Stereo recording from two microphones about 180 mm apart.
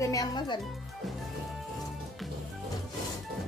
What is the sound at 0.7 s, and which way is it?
Speech, centre (ahead or behind).